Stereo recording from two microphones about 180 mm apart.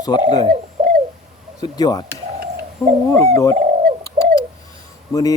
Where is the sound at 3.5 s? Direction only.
40° right (ahead or behind).